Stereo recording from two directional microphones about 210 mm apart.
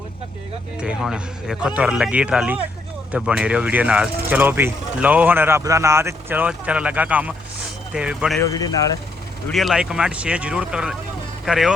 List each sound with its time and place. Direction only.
0.8 s speech: 5° right (ahead or behind)
8.4 s speech: 15° left (ahead or behind)
9.5 s speech: centre (ahead or behind)